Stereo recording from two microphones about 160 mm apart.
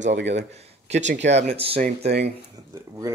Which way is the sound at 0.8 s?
45° right (ahead or behind).